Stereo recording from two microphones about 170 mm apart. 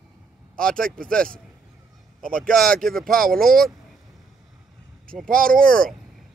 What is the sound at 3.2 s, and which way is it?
Speech, 60° right (ahead or behind).